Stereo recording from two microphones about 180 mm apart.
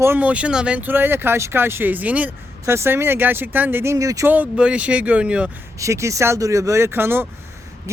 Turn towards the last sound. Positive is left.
turn(degrees=-10)  # may be behind; listen again after turning